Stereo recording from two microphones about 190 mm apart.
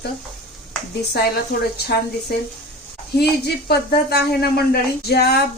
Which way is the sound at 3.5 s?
55° left (ahead or behind).